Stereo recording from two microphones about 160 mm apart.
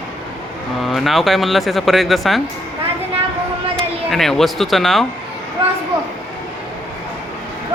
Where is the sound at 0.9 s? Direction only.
Centre (ahead or behind).